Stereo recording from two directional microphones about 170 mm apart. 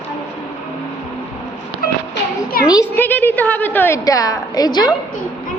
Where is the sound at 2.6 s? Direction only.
15° left (ahead or behind).